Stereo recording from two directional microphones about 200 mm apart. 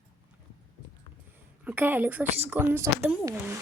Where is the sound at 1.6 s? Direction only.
10° right (ahead or behind).